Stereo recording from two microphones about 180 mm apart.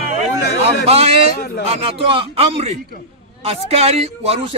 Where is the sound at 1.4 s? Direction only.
60° left (ahead or behind).